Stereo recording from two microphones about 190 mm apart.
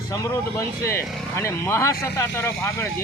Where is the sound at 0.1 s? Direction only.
15° left (ahead or behind).